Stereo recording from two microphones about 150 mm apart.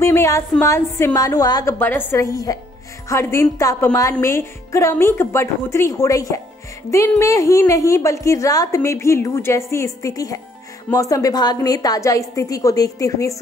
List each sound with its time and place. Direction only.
0.0 s a woman's voice: 20° left (ahead or behind)